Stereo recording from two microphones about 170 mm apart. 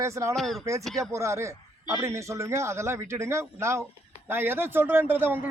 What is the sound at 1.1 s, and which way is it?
A man's voice, 15° right (ahead or behind).